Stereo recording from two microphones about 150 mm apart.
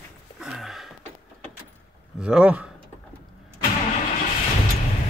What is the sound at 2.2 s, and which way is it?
Speech, 5° right (ahead or behind).